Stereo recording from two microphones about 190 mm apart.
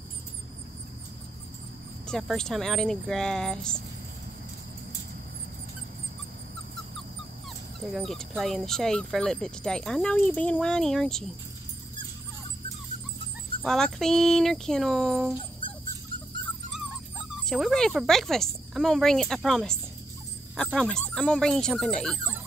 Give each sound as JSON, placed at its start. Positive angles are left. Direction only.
{"t": 2.0, "sound": "speech", "side_deg": 0}
{"t": 7.8, "sound": "speech", "side_deg": 0}
{"t": 13.7, "sound": "speech", "side_deg": 5}
{"t": 15.6, "sound": "dog", "side_deg": 25}
{"t": 17.5, "sound": "speech", "side_deg": 0}